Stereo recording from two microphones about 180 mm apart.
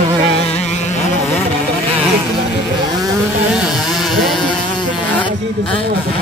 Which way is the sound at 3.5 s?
Centre (ahead or behind).